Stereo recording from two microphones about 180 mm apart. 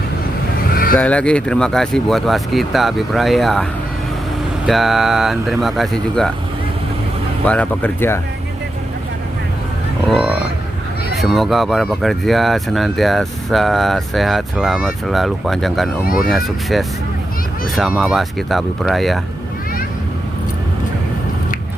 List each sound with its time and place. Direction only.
0.7 s vehicle: 55° left (ahead or behind)
0.9 s speech: 5° left (ahead or behind)
7.4 s speech: 5° left (ahead or behind)
10.1 s speech: centre (ahead or behind)